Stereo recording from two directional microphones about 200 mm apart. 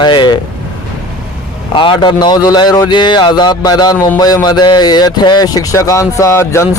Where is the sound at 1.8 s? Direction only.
25° left (ahead or behind).